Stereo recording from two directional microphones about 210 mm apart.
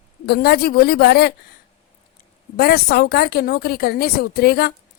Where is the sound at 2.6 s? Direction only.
50° left (ahead or behind).